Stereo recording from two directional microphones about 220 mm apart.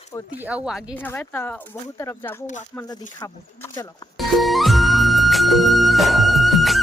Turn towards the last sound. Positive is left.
turn(degrees=0)  # may be behind; listen again after turning